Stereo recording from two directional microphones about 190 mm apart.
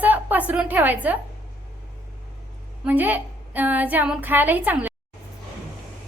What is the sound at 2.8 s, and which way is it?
Speech, 10° right (ahead or behind).